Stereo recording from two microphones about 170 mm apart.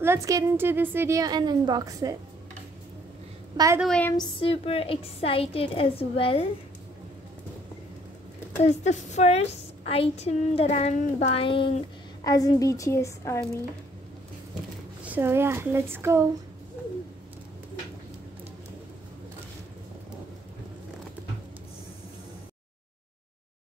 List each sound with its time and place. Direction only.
0.0 s a woman's voice: 15° right (ahead or behind)
3.5 s a woman's voice: 20° right (ahead or behind)
3.8 s a woman's voice: 5° left (ahead or behind)
4.2 s a woman's voice: 30° left (ahead or behind)
8.5 s a woman's voice: 40° left (ahead or behind); by 13.5 s 15° left (ahead or behind)
15.0 s speech: 10° right (ahead or behind)